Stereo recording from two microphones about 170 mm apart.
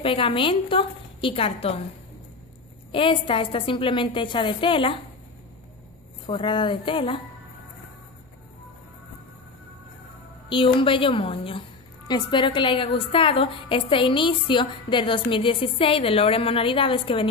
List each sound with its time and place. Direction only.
0.0 s a woman's voice: 30° left (ahead or behind)
2.9 s a woman's voice: 30° left (ahead or behind)
6.2 s a woman's voice: 30° left (ahead or behind)
10.5 s a woman's voice: 30° left (ahead or behind)